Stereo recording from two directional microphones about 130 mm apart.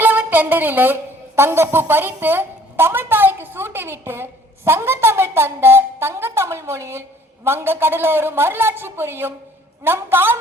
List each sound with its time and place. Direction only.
0.0 s a woman's voice: 15° right (ahead or behind)